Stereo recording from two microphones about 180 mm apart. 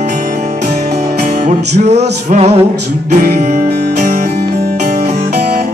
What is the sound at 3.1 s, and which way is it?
Music, 50° right (ahead or behind).